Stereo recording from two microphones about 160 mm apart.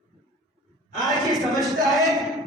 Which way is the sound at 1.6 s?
Centre (ahead or behind).